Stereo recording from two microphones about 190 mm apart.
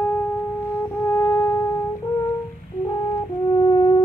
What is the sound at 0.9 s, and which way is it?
Music, 15° left (ahead or behind).